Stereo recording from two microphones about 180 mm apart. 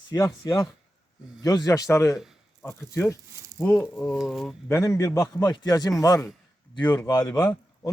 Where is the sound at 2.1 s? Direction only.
Centre (ahead or behind).